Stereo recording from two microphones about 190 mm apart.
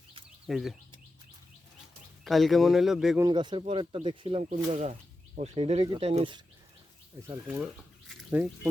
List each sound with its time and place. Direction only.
0.4 s a man's voice: centre (ahead or behind)
2.2 s a man's voice: centre (ahead or behind)
3.2 s speech: 25° right (ahead or behind)
7.3 s speech: 15° right (ahead or behind)